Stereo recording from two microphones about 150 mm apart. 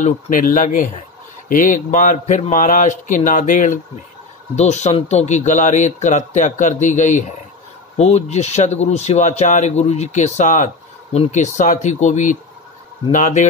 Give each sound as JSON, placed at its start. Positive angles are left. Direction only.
{"t": 0.0, "sound": "speech", "side_deg": 60}